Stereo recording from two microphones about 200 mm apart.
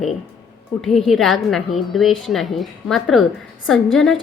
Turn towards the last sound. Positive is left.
turn(degrees=0)  # may be behind; listen again after turning